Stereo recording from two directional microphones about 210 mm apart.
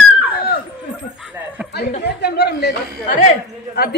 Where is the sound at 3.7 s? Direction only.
50° left (ahead or behind).